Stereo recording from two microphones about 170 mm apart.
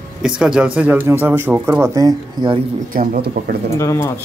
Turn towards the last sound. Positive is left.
turn(degrees=15)  # may be behind; listen again after turning